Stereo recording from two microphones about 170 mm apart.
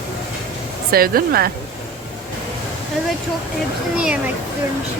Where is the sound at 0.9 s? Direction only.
60° right (ahead or behind).